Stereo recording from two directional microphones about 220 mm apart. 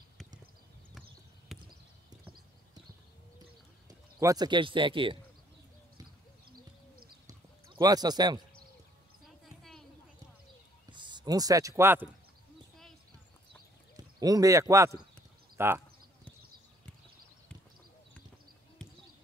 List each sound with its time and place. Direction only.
1.5 s horse: centre (ahead or behind)
2.0 s a sound: 20° right (ahead or behind)
4.2 s speech: 15° right (ahead or behind)
7.2 s horse: 15° right (ahead or behind)
9.2 s a sound: centre (ahead or behind)
10.9 s speech: 20° right (ahead or behind)
13.9 s speech: 15° right (ahead or behind)